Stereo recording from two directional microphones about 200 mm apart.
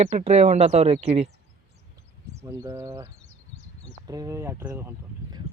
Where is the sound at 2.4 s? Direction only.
15° right (ahead or behind).